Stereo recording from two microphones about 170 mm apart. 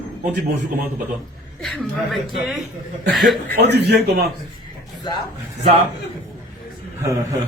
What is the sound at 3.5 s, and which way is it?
Speech, 70° right (ahead or behind).